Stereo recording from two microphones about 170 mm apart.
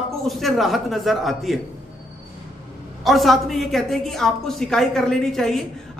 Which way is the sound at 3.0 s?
Centre (ahead or behind).